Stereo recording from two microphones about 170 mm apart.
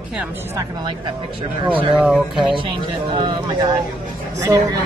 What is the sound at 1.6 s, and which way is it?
Speech, 5° right (ahead or behind).